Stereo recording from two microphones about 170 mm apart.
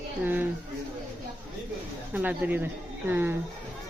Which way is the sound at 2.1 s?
10° right (ahead or behind).